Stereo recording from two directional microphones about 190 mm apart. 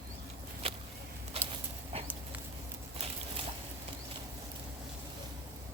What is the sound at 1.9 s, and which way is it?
Dog, 30° right (ahead or behind).